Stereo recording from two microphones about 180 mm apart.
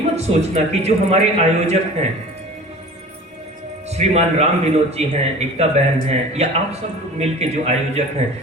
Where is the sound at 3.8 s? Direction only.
35° right (ahead or behind).